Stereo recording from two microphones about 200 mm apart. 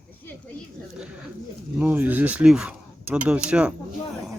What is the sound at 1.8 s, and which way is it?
Speech, 10° right (ahead or behind).